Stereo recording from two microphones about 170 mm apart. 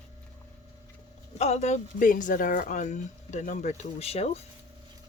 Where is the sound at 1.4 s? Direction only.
40° left (ahead or behind).